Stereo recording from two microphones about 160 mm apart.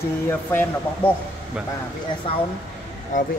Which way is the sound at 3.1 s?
55° left (ahead or behind).